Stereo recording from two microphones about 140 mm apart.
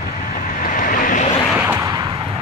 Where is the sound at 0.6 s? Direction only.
75° left (ahead or behind).